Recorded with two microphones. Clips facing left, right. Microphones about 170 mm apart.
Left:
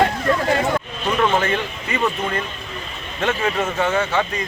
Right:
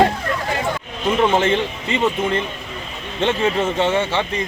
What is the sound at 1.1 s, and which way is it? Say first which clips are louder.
A man's voice: right 2 dB; 25° right (ahead or behind).